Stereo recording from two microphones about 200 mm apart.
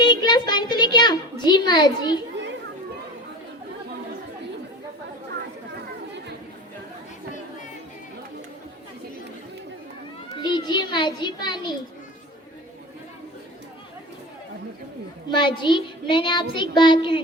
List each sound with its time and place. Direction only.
0.0 s a sound: 20° left (ahead or behind)
10.3 s a child's voice: 25° left (ahead or behind)
15.3 s speech: 25° left (ahead or behind)